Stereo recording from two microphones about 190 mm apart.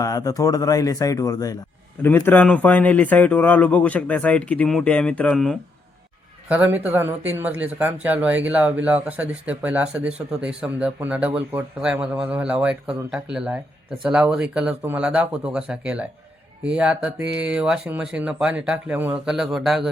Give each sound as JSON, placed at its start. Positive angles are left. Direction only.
{"t": 0.0, "sound": "speech", "side_deg": 20}
{"t": 6.5, "sound": "speech", "side_deg": -10}